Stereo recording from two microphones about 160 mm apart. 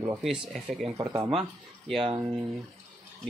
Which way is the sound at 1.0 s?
20° right (ahead or behind).